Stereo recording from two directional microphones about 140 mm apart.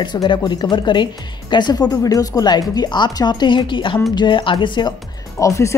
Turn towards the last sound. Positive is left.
turn(degrees=25)  # may be behind; listen again after turning